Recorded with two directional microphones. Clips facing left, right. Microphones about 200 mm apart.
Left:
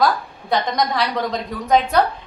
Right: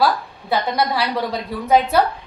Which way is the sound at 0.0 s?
5° right (ahead or behind).